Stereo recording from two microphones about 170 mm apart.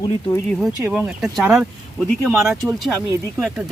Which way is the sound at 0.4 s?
Centre (ahead or behind).